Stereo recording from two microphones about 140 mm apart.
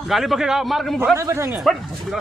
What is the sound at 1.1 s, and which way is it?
Speech, 20° right (ahead or behind).